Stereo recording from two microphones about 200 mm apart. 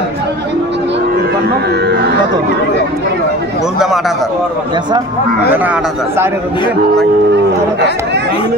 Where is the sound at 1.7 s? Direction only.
55° right (ahead or behind).